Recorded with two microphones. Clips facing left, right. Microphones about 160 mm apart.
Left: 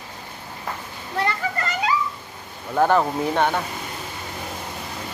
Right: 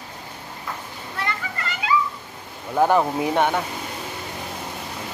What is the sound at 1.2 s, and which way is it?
Children playing, 40° left (ahead or behind).